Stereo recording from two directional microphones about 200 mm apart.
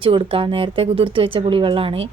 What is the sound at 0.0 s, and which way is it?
Speech, 25° right (ahead or behind).